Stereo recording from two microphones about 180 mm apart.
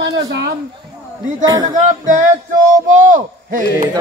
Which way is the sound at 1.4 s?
20° right (ahead or behind).